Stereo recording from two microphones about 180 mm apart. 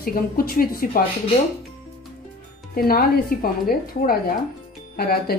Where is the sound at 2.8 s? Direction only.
55° left (ahead or behind).